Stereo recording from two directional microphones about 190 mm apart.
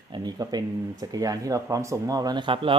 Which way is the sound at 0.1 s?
20° right (ahead or behind).